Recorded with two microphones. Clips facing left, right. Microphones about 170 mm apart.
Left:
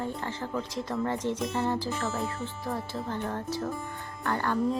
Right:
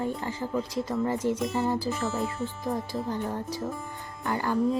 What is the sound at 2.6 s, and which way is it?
Speech, 15° right (ahead or behind).